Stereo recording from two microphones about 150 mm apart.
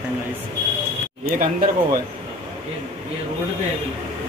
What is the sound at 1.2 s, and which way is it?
Speech, 70° right (ahead or behind).